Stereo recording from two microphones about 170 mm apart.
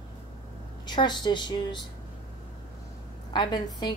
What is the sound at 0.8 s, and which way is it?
Speech, 25° left (ahead or behind).